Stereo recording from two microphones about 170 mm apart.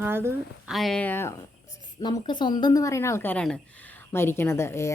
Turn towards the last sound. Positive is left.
turn(degrees=15)  # may be behind; listen again after turning